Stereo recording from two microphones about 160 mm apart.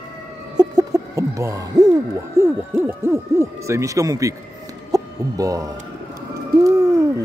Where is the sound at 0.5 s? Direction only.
25° right (ahead or behind).